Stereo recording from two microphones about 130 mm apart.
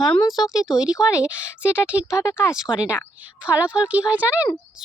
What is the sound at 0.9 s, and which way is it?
Speech, 25° left (ahead or behind).